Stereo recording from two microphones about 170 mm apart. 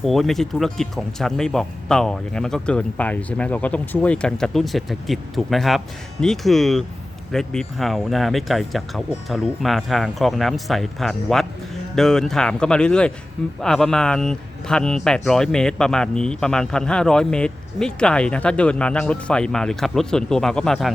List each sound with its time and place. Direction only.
0.0 s speech: centre (ahead or behind)